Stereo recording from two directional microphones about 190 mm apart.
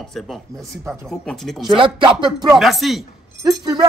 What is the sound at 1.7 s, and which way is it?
Speech, 25° right (ahead or behind).